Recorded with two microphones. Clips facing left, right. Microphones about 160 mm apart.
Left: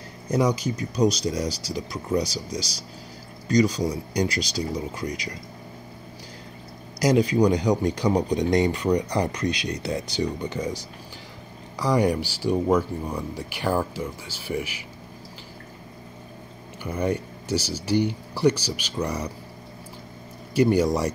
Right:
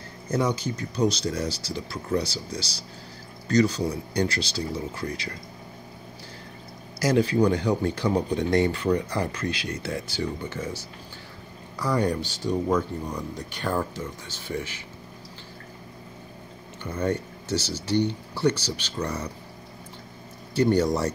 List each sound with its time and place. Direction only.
0.3 s speech: 15° left (ahead or behind)
7.0 s speech: 15° left (ahead or behind)
16.8 s speech: 10° left (ahead or behind)
20.5 s speech: 10° left (ahead or behind)